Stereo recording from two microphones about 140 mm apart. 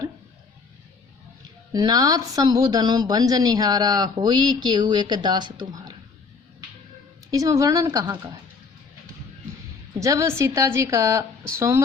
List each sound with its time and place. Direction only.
1.7 s a woman's voice: 25° right (ahead or behind)
7.3 s a woman's voice: 25° right (ahead or behind)
10.0 s a woman's voice: 20° right (ahead or behind)